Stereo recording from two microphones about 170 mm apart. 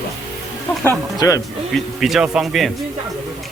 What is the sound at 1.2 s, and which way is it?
Speech, 20° left (ahead or behind).